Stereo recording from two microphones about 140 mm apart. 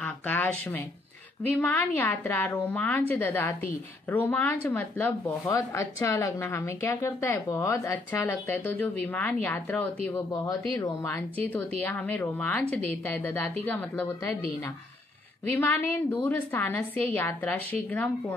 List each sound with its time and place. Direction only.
0.0 s a woman's voice: 10° left (ahead or behind)
11.5 s a woman's voice: 10° left (ahead or behind)
15.4 s a woman's voice: 15° left (ahead or behind)